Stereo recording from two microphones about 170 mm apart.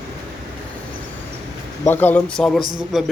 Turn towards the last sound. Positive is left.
turn(degrees=0)  # may be behind; listen again after turning